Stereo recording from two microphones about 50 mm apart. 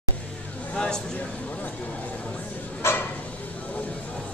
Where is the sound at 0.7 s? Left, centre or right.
Centre.